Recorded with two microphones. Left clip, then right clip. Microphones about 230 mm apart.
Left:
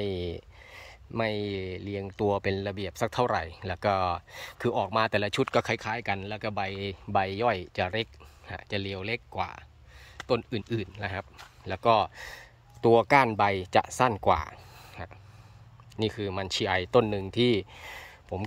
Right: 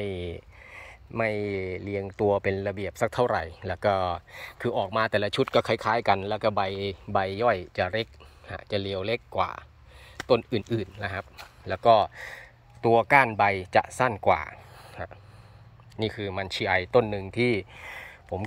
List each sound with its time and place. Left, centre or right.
0.0 s speech: left